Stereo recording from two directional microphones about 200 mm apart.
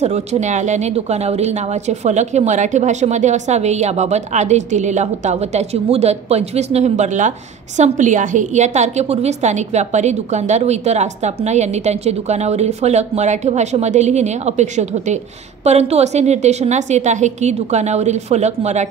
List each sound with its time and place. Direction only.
0.0 s speech: 35° right (ahead or behind)